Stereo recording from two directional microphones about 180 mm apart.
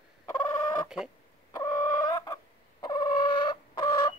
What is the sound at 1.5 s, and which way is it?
Chicken, 15° left (ahead or behind).